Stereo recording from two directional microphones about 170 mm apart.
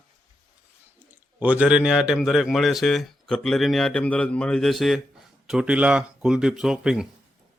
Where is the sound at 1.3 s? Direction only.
10° right (ahead or behind).